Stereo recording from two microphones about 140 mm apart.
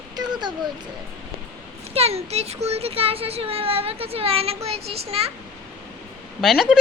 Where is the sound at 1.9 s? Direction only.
45° right (ahead or behind).